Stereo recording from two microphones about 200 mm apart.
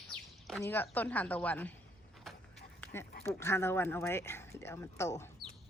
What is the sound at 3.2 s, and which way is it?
Speech, 15° left (ahead or behind).